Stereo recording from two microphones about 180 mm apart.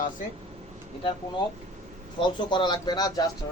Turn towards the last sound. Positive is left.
turn(degrees=20)  # may be behind; listen again after turning